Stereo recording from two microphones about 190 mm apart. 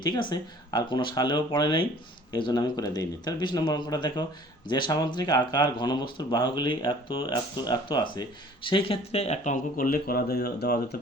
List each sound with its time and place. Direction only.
0.0 s speech: 25° left (ahead or behind); by 10.9 s 60° left (ahead or behind)